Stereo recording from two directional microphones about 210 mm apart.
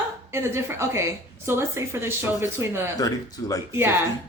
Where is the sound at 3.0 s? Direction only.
15° left (ahead or behind).